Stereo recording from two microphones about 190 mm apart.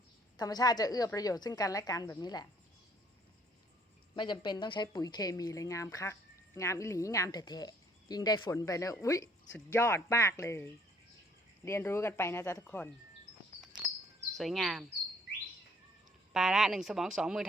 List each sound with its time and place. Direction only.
0.3 s speech: 20° left (ahead or behind)
4.1 s speech: 25° left (ahead or behind)
14.3 s speech: centre (ahead or behind)
16.3 s speech: centre (ahead or behind)